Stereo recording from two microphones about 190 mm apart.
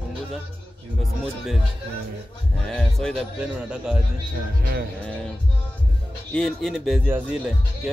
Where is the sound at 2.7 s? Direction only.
5° left (ahead or behind).